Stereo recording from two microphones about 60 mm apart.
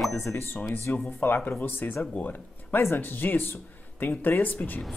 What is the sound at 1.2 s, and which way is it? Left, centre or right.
Speech, left.